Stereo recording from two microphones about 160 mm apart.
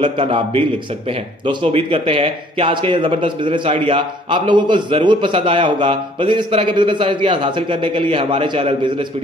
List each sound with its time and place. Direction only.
0.0 s speech: 30° right (ahead or behind)